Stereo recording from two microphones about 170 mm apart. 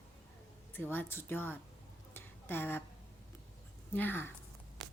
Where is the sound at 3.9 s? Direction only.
10° left (ahead or behind).